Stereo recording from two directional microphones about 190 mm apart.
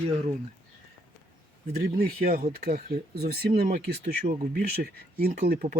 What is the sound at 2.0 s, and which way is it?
Speech, 50° right (ahead or behind).